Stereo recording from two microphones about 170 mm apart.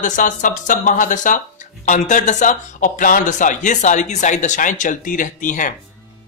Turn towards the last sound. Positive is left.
turn(degrees=50)  # may be behind; listen again after turning